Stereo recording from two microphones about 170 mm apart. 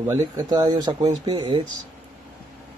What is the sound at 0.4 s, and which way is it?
Speech, 25° right (ahead or behind).